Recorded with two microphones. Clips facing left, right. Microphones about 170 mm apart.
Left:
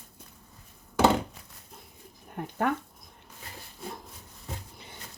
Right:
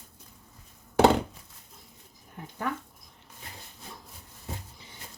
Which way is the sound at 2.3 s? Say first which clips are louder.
Left 5 dB; 60° left (ahead or behind).